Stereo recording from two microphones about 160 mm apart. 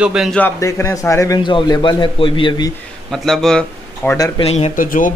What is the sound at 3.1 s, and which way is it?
Speech, centre (ahead or behind).